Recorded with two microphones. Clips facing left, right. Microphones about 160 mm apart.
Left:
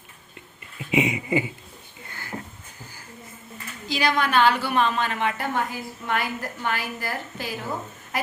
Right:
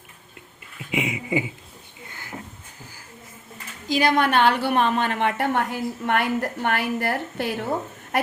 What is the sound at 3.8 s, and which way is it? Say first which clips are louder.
A woman's voice: right 4 dB; 50° right (ahead or behind).